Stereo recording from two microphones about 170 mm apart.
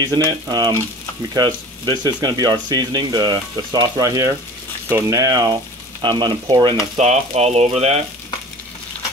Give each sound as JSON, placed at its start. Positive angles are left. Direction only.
{"t": 0.3, "sound": "speech", "side_deg": -25}
{"t": 7.0, "sound": "speech", "side_deg": -40}